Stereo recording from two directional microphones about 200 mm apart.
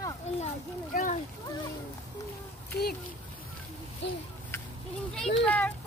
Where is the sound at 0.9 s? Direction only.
40° left (ahead or behind).